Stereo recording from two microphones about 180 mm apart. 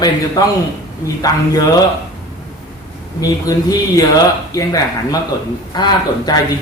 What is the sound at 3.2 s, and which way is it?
Speech, 20° left (ahead or behind).